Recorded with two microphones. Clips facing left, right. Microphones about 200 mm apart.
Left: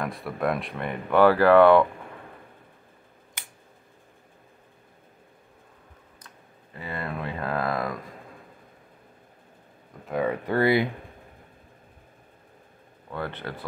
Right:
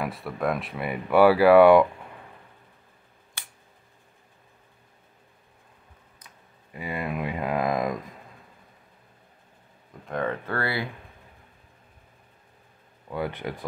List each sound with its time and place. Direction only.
0.0 s speech: centre (ahead or behind)
6.2 s speech: 10° right (ahead or behind)
10.0 s speech: 10° left (ahead or behind)
13.1 s speech: 10° right (ahead or behind)